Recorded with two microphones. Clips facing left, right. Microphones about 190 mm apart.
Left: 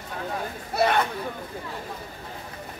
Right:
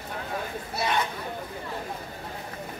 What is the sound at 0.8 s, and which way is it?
Speech, 55° left (ahead or behind).